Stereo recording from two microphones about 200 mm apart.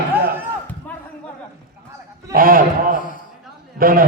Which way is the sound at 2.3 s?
45° right (ahead or behind).